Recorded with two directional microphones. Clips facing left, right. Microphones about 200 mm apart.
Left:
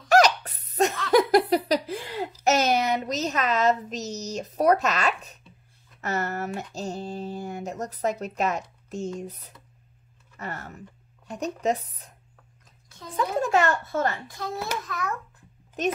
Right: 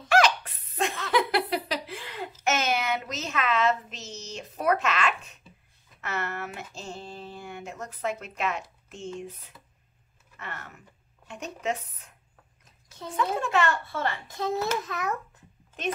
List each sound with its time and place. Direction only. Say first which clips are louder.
0.1 s laughter: left 3 dB; 40° left (ahead or behind)
1.1 s a sound: left 7 dB; 40° left (ahead or behind)
5.9 s speech: left 5 dB; 40° left (ahead or behind)
8.8 s a sound: left 7 dB; 40° left (ahead or behind)
9.2 s speech: left 2 dB; 40° left (ahead or behind)
13.1 s speech: left 3 dB; 40° left (ahead or behind)
14.2 s a child's voice: right 4 dB; 20° right (ahead or behind)